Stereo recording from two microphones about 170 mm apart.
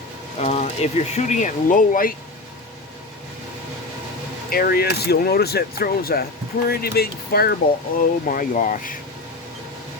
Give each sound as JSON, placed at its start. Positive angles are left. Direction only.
{"t": 0.3, "sound": "speech", "side_deg": 40}
{"t": 4.4, "sound": "speech", "side_deg": 60}